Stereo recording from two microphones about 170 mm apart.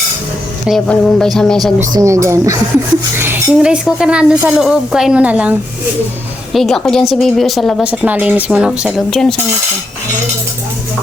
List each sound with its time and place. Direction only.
0.7 s speech: centre (ahead or behind)
2.0 s speech: 15° right (ahead or behind); by 9.3 s 5° left (ahead or behind)